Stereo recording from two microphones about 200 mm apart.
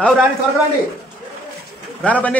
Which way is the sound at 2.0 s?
10° left (ahead or behind).